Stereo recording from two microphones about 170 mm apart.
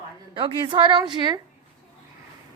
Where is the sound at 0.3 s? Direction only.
30° right (ahead or behind).